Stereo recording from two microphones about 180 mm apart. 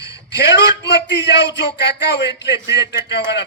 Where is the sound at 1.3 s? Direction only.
75° left (ahead or behind).